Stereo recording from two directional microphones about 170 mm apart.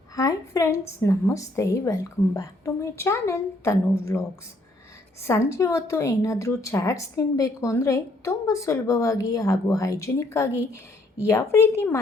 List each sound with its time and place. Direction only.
0.2 s a woman's voice: 20° left (ahead or behind)